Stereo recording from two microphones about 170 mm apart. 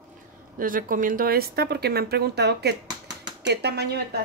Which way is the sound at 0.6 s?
55° right (ahead or behind).